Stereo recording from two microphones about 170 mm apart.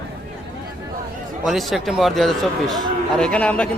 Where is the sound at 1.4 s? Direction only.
Centre (ahead or behind).